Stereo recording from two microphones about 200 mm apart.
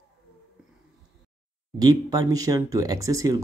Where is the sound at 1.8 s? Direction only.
20° right (ahead or behind).